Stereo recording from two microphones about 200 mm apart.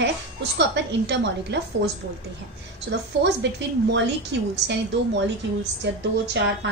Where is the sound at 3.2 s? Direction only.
60° right (ahead or behind).